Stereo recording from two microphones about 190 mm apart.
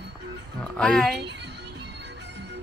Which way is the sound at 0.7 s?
Centre (ahead or behind).